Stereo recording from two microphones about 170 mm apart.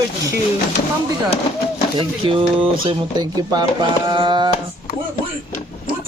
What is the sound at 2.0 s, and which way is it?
Speech, 30° right (ahead or behind).